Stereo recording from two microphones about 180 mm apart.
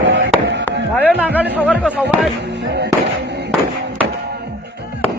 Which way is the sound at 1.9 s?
5° right (ahead or behind).